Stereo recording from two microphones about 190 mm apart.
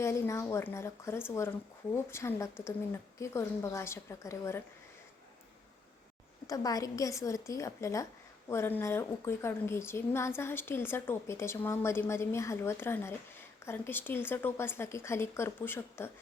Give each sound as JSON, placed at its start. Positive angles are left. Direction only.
{"t": 0.0, "sound": "a woman's voice", "side_deg": 15}
{"t": 6.5, "sound": "a woman's voice", "side_deg": 20}